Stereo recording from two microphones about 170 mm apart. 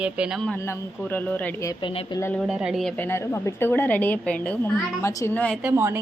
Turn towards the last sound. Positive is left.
turn(degrees=-15)  # may be behind; listen again after turning